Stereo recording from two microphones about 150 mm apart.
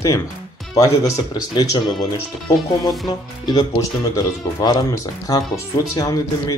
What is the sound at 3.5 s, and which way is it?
Speech, 25° left (ahead or behind).